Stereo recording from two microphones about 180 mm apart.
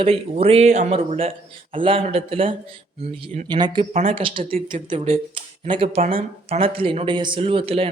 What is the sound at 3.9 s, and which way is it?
A man's voice, 40° right (ahead or behind).